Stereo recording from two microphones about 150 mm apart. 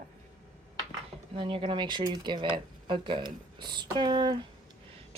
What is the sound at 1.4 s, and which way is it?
Speech, 35° right (ahead or behind).